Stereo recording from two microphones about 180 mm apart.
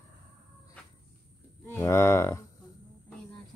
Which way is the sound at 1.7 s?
15° left (ahead or behind).